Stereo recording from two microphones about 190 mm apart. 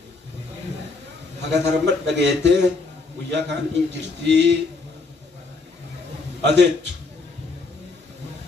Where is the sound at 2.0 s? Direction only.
65° right (ahead or behind).